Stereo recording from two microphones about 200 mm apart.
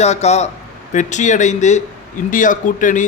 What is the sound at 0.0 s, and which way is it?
A man's voice, 35° left (ahead or behind).